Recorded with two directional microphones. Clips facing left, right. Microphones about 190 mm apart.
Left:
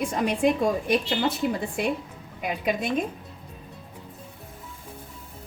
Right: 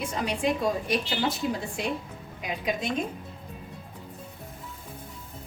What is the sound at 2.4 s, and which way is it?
Speech, 55° left (ahead or behind).